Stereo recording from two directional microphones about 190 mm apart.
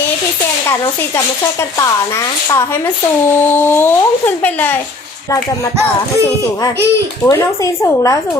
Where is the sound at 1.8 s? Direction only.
15° left (ahead or behind).